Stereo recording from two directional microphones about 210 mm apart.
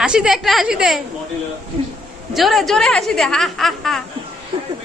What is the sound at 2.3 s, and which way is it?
A woman's voice, centre (ahead or behind).